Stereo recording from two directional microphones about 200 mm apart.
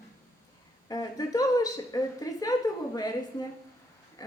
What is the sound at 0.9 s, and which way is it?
A woman's voice, 20° left (ahead or behind).